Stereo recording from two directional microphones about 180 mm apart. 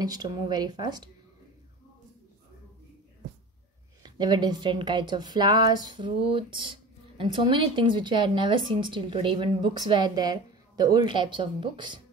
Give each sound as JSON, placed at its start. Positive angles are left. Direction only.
{"t": 0.0, "sound": "a woman's voice", "side_deg": -20}
{"t": 4.0, "sound": "a woman's voice", "side_deg": -25}